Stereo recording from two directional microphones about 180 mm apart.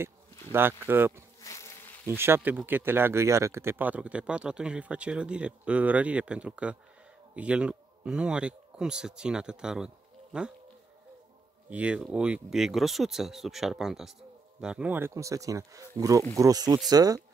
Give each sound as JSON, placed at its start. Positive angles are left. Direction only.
{"t": 0.5, "sound": "speech", "side_deg": -10}
{"t": 1.4, "sound": "bee", "side_deg": 15}
{"t": 2.0, "sound": "speech", "side_deg": -15}
{"t": 11.7, "sound": "speech", "side_deg": -5}